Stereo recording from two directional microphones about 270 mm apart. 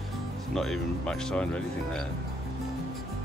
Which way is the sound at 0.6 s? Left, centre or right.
Centre.